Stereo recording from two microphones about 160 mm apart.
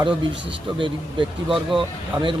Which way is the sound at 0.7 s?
30° right (ahead or behind).